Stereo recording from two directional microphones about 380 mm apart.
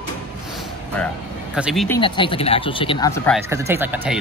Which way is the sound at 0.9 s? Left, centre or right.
Centre.